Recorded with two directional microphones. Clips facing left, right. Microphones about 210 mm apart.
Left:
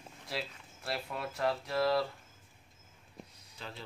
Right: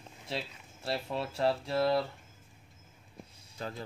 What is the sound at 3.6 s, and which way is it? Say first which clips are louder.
Speech: right 7 dB; 45° right (ahead or behind).